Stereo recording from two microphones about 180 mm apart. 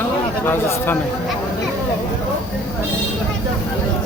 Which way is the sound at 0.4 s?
10° left (ahead or behind).